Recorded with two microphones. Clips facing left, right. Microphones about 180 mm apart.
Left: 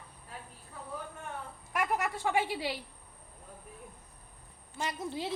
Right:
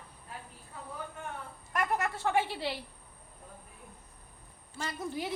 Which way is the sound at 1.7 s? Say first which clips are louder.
Even; 10° left (ahead or behind).